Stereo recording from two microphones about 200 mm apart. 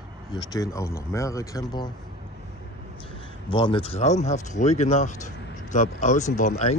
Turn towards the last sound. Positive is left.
turn(degrees=35)  # may be behind; listen again after turning